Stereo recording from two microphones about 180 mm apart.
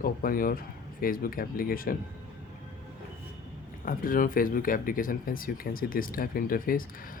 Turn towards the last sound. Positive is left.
turn(degrees=50)  # may be behind; listen again after turning